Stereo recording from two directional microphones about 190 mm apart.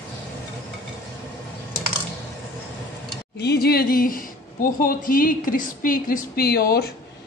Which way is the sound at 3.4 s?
60° left (ahead or behind).